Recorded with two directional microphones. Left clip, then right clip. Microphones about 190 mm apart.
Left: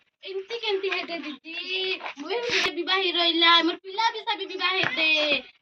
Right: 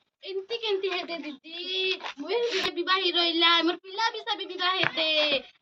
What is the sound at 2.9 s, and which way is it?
Child singing, centre (ahead or behind).